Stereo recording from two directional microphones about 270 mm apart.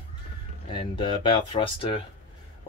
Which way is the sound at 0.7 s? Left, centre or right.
Centre.